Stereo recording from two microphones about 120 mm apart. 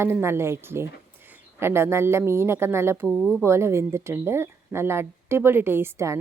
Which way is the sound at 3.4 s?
20° right (ahead or behind).